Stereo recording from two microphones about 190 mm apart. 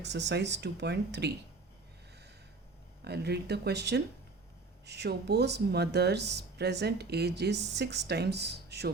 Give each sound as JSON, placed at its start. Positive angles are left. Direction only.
{"t": 0.0, "sound": "speech", "side_deg": -65}
{"t": 3.0, "sound": "speech", "side_deg": -60}